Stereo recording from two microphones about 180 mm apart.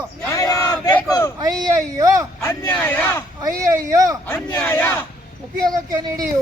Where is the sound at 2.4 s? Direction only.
15° left (ahead or behind).